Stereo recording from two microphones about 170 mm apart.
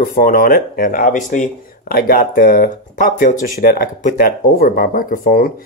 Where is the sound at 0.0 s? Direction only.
55° left (ahead or behind).